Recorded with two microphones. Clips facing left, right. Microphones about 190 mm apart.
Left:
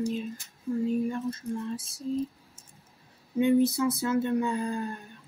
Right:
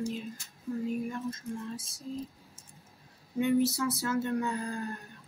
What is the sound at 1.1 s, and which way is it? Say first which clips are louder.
Speech: left 5 dB; 30° left (ahead or behind).